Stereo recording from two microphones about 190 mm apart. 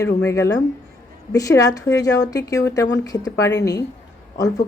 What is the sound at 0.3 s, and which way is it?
Speech, 15° left (ahead or behind).